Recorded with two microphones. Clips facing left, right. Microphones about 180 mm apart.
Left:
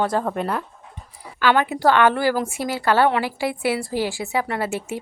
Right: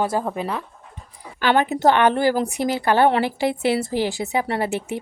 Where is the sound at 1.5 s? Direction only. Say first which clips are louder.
Right 1 dB; 20° right (ahead or behind).